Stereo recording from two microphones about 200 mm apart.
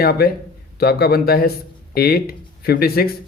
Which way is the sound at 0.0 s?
50° left (ahead or behind).